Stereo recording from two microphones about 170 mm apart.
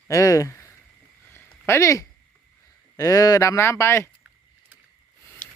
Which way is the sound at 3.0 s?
20° left (ahead or behind).